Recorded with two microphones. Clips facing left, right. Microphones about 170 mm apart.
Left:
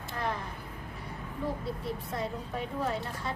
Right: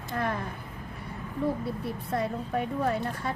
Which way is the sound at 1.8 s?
55° right (ahead or behind).